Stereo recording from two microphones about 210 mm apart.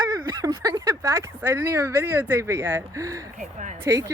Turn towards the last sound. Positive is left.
turn(degrees=-15)  # may be behind; listen again after turning